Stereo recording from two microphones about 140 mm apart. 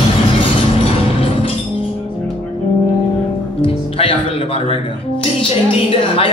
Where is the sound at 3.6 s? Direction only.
40° left (ahead or behind).